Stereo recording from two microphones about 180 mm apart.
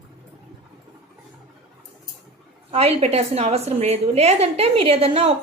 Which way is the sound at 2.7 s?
35° right (ahead or behind).